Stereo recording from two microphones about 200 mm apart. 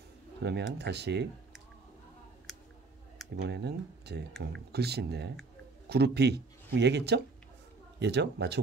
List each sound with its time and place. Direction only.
0.4 s speech: 60° right (ahead or behind)
3.3 s speech: 55° right (ahead or behind)